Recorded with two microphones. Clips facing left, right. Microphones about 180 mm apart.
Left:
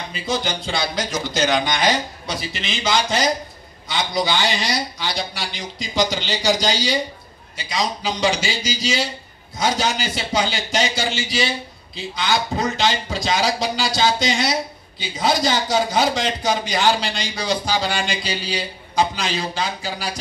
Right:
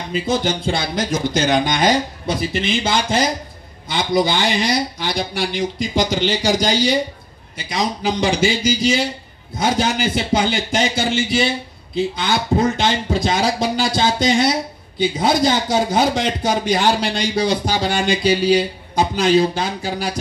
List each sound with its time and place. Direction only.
0.1 s a man's voice: 55° right (ahead or behind)